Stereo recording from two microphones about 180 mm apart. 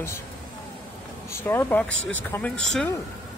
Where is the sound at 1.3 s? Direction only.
15° left (ahead or behind).